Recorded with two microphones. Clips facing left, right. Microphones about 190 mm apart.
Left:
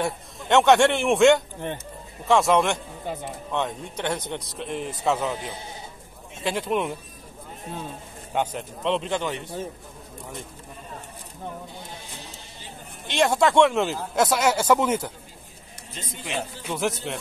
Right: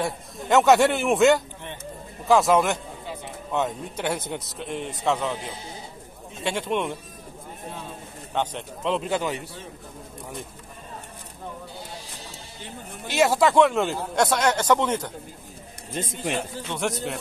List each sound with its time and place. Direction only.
0.0 s speech: centre (ahead or behind)
3.1 s speech: 50° left (ahead or behind)
3.5 s a man's voice: 5° right (ahead or behind)
6.4 s speech: centre (ahead or behind)
8.4 s a man's voice: centre (ahead or behind)
13.1 s speech: 5° right (ahead or behind)
15.9 s a man's voice: 50° right (ahead or behind)
16.6 s speech: 5° left (ahead or behind)